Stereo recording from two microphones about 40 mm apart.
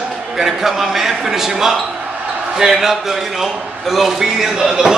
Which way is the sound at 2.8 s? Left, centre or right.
Centre.